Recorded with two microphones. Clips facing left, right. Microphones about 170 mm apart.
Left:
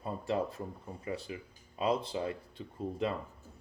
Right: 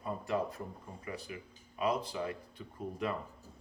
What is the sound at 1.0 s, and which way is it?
Speech, 25° left (ahead or behind).